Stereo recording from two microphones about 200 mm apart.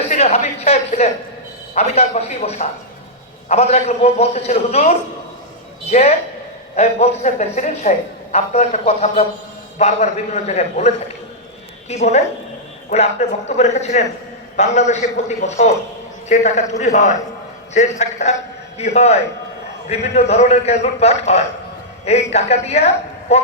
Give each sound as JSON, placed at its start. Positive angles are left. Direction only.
{"t": 0.1, "sound": "a woman's voice", "side_deg": 35}